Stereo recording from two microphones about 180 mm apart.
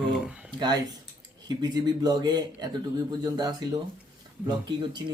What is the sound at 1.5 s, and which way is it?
A man's voice, 20° right (ahead or behind).